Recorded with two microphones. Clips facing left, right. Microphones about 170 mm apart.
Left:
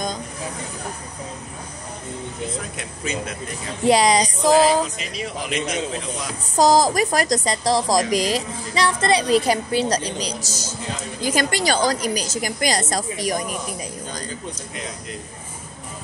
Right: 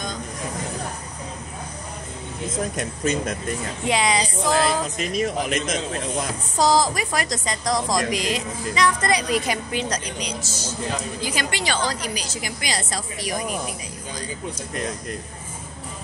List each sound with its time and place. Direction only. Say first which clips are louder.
2.8 s speech: right 5 dB; 45° right (ahead or behind)
3.8 s a woman's voice: left 6 dB; 40° left (ahead or behind)
4.9 s speech: right 6 dB; 50° right (ahead or behind)
6.5 s a woman's voice: left 4 dB; 45° left (ahead or behind)